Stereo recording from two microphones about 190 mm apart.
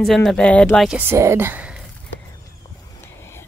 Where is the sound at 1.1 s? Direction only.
15° right (ahead or behind).